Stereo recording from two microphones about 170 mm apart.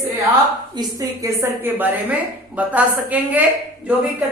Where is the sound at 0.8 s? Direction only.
20° right (ahead or behind).